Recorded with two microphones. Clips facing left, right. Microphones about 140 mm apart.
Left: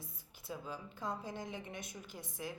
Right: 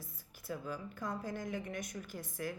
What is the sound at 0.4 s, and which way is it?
A woman's voice, 25° left (ahead or behind).